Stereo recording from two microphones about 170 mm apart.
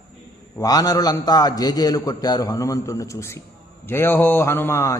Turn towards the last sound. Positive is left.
turn(degrees=15)  # may be behind; listen again after turning